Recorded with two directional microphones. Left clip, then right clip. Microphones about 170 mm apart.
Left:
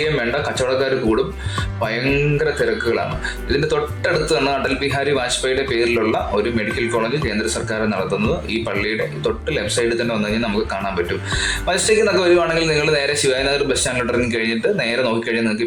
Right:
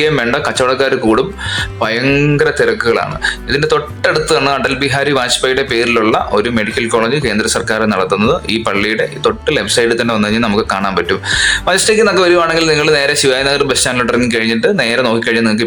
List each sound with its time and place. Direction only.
0.0 s speech: 30° right (ahead or behind)